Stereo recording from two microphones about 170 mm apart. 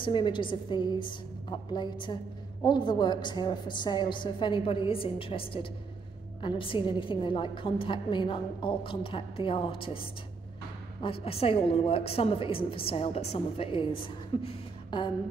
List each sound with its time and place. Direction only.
0.0 s a woman's voice: 30° left (ahead or behind)
11.2 s a woman's voice: 35° left (ahead or behind)